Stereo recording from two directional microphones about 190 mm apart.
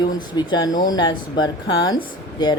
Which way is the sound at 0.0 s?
20° left (ahead or behind).